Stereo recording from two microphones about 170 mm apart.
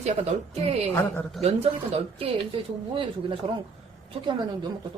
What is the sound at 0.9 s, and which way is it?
Speech, 15° left (ahead or behind).